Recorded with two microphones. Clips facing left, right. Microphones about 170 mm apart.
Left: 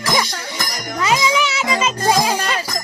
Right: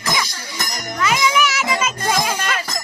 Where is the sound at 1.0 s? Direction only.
30° left (ahead or behind).